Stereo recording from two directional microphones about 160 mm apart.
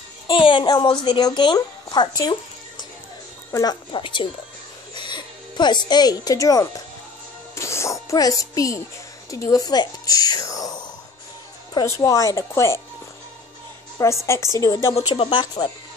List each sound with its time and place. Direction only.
0.3 s a woman's voice: 30° left (ahead or behind)
3.5 s speech: 25° left (ahead or behind)
13.9 s a woman's voice: 15° left (ahead or behind)
15.0 s speech: 35° left (ahead or behind)